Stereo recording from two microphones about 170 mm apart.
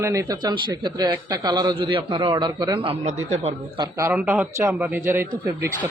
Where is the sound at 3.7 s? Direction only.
25° right (ahead or behind).